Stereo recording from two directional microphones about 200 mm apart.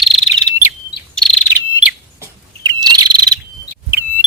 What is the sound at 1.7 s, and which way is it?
Bird, 10° right (ahead or behind).